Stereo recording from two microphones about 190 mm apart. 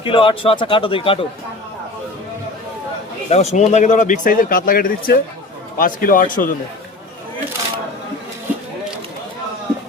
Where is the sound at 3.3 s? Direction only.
35° left (ahead or behind).